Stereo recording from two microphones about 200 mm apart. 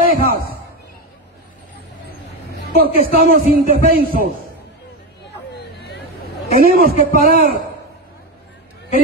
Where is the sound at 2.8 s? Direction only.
45° right (ahead or behind).